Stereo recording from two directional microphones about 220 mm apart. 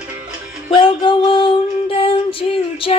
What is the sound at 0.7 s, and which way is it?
Female singing, 25° left (ahead or behind).